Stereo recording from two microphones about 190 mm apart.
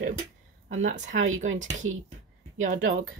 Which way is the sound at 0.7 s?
40° right (ahead or behind).